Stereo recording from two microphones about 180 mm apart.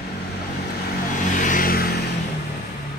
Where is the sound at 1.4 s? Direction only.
50° left (ahead or behind).